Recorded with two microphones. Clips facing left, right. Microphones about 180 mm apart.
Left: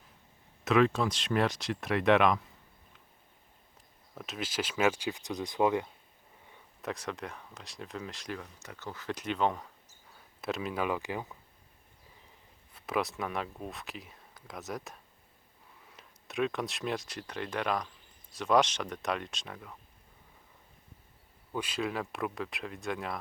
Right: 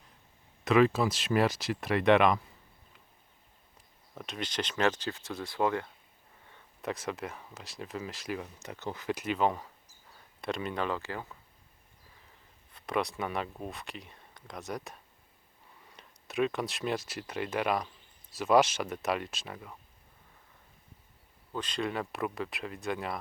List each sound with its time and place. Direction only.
0.6 s speech: centre (ahead or behind)
4.1 s speech: centre (ahead or behind); by 5.9 s 15° left (ahead or behind)
6.8 s speech: centre (ahead or behind)
8.4 s speech: 20° right (ahead or behind)
9.0 s speech: 5° right (ahead or behind); by 11.3 s 15° left (ahead or behind)
12.7 s speech: 5° left (ahead or behind)
21.5 s speech: 10° left (ahead or behind)